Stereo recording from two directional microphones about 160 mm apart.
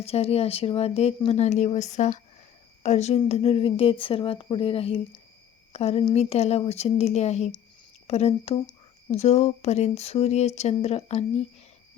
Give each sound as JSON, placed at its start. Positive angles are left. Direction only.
{"t": 0.0, "sound": "speech", "side_deg": 40}